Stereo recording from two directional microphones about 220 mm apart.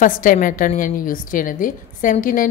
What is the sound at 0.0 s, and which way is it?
A woman's voice, 40° left (ahead or behind).